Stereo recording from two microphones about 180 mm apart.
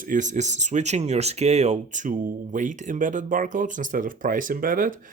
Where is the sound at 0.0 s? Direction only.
45° right (ahead or behind).